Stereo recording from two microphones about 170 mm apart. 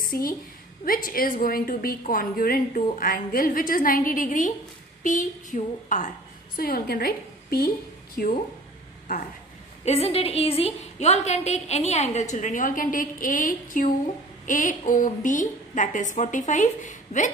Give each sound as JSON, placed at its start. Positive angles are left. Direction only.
{"t": 0.0, "sound": "a woman's voice", "side_deg": 55}
{"t": 6.5, "sound": "a woman's voice", "side_deg": 60}
{"t": 9.8, "sound": "a woman's voice", "side_deg": 35}